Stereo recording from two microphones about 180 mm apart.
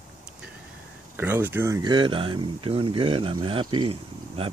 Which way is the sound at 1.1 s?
10° right (ahead or behind).